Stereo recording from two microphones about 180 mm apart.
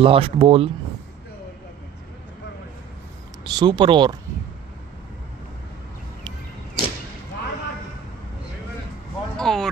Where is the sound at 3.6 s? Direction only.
25° right (ahead or behind).